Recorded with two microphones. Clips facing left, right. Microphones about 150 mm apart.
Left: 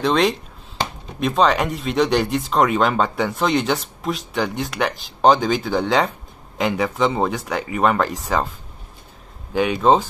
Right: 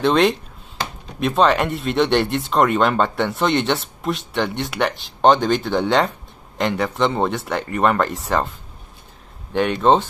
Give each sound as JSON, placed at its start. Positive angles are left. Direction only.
{"t": 0.0, "sound": "speech", "side_deg": 0}